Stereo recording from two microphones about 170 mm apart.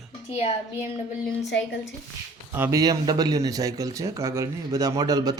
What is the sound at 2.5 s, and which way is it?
Speech, 15° right (ahead or behind).